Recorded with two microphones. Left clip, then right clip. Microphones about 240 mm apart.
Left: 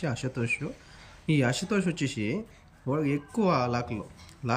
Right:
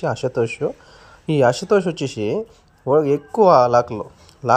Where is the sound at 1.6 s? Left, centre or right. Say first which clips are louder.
Right 13 dB; right.